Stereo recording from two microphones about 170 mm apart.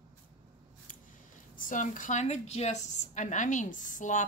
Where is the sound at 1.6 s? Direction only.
50° left (ahead or behind).